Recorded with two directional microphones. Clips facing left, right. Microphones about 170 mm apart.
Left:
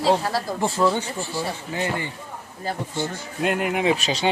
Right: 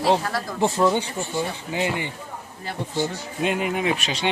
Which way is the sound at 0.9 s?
15° right (ahead or behind).